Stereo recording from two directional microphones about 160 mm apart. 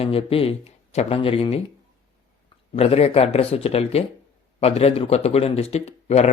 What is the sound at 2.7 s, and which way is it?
Speech, 40° left (ahead or behind).